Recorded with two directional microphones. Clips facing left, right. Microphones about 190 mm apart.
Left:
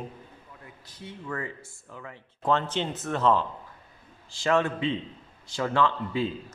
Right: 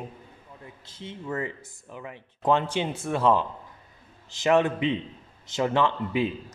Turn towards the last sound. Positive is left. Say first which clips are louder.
# right 2 dB
turn(degrees=-20)  # may be behind; listen again after turning